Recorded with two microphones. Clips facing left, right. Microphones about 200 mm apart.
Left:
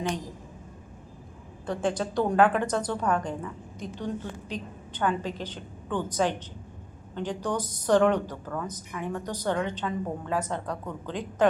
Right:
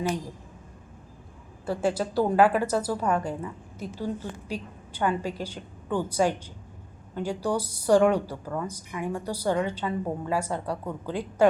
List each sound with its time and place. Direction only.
1.6 s a woman's voice: 5° right (ahead or behind)